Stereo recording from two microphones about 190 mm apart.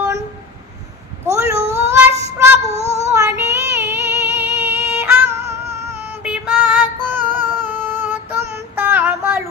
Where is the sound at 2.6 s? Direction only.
35° right (ahead or behind).